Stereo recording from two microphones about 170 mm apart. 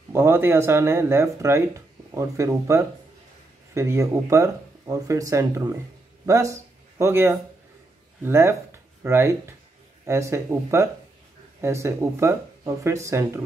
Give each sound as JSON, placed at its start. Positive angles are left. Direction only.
{"t": 0.1, "sound": "speech", "side_deg": -15}